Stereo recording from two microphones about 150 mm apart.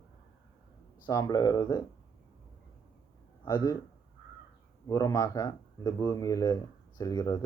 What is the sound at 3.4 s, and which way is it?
Speech, 25° left (ahead or behind).